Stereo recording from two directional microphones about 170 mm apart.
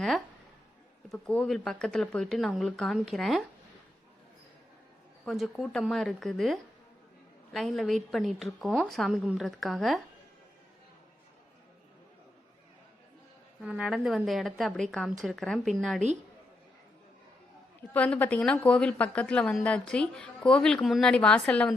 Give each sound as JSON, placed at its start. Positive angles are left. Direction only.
{"t": 1.1, "sound": "a woman's voice", "side_deg": 5}
{"t": 5.2, "sound": "a woman's voice", "side_deg": 0}
{"t": 13.6, "sound": "a woman's voice", "side_deg": -5}
{"t": 17.9, "sound": "a woman's voice", "side_deg": 10}